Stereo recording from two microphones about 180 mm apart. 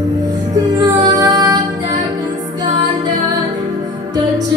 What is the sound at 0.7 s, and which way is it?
Music, 20° right (ahead or behind).